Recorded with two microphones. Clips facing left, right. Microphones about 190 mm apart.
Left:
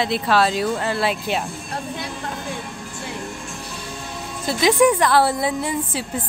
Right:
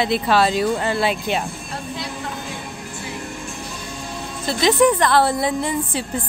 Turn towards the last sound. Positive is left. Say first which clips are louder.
# right 1 dB
turn(degrees=5)  # may be behind; listen again after turning